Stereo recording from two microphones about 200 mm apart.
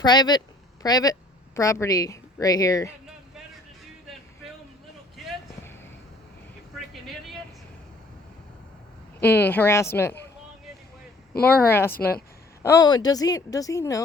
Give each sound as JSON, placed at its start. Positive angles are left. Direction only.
{"t": 0.0, "sound": "a woman's voice", "side_deg": 20}
{"t": 6.7, "sound": "vehicle", "side_deg": 0}
{"t": 9.2, "sound": "a woman's voice", "side_deg": 10}
{"t": 11.4, "sound": "a woman's voice", "side_deg": 10}